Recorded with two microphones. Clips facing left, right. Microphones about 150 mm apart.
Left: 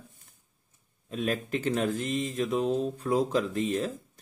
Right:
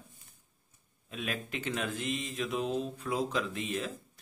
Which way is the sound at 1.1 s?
40° left (ahead or behind).